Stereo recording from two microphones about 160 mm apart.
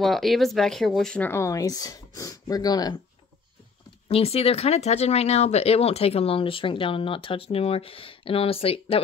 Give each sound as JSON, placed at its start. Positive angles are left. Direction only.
{"t": 0.0, "sound": "speech", "side_deg": 0}
{"t": 4.1, "sound": "speech", "side_deg": 40}